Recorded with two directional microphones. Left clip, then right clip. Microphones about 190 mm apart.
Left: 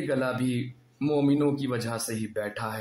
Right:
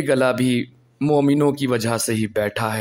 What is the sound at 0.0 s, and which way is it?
Speech, 35° right (ahead or behind).